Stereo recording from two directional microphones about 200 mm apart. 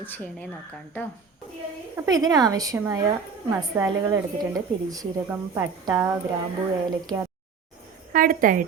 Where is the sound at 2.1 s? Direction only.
20° right (ahead or behind).